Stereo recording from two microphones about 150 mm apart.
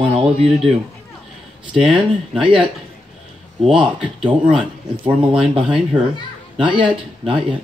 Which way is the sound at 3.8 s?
5° right (ahead or behind).